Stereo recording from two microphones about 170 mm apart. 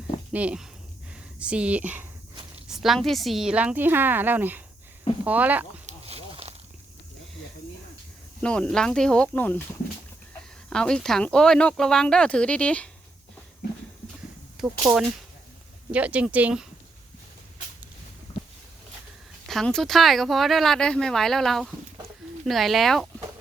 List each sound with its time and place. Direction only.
0.3 s a woman's voice: 5° right (ahead or behind)
5.8 s a sound: 35° right (ahead or behind)
8.4 s speech: 5° left (ahead or behind)
10.7 s speech: 5° left (ahead or behind)
14.6 s a woman's voice: 5° right (ahead or behind)
18.3 s a sound: 25° left (ahead or behind)
19.5 s speech: centre (ahead or behind)